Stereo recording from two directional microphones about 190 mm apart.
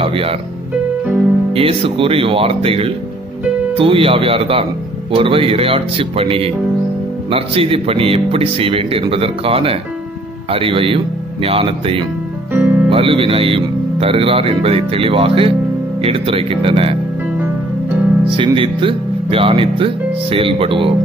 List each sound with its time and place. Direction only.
0.0 s speech: 30° right (ahead or behind)
1.5 s speech: 30° right (ahead or behind)
12.5 s music: 10° right (ahead or behind)
12.9 s speech: 30° right (ahead or behind)
18.3 s speech: 25° right (ahead or behind)